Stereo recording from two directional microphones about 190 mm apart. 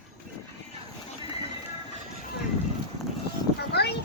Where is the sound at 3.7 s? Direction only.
60° left (ahead or behind).